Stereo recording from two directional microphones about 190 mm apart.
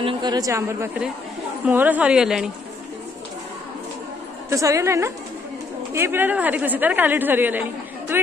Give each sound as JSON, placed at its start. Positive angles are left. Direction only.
{"t": 0.0, "sound": "a woman's voice", "side_deg": -20}
{"t": 4.5, "sound": "a woman's voice", "side_deg": -15}
{"t": 8.1, "sound": "a sound", "side_deg": -10}